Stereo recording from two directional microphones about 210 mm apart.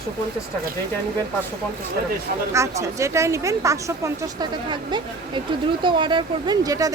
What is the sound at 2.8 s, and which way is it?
Speech, 15° right (ahead or behind).